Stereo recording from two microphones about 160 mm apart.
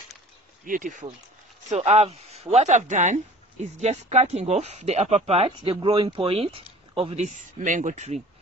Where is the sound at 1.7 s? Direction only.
40° right (ahead or behind).